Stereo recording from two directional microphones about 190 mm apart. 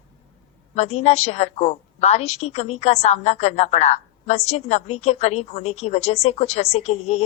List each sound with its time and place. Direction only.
0.7 s a woman's voice: 35° left (ahead or behind)